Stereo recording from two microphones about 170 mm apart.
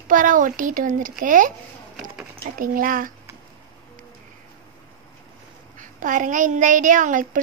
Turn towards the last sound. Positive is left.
turn(degrees=-50)  # may be behind; listen again after turning